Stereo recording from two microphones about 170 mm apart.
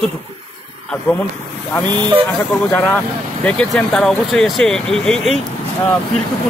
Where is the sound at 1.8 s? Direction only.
25° right (ahead or behind).